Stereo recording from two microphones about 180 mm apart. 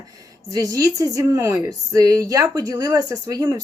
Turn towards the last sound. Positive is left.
turn(degrees=-15)  # may be behind; listen again after turning